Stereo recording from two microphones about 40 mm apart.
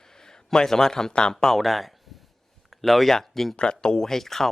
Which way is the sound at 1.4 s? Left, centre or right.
Centre.